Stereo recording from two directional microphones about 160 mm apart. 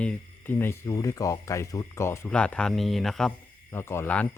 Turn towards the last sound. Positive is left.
turn(degrees=10)  # may be behind; listen again after turning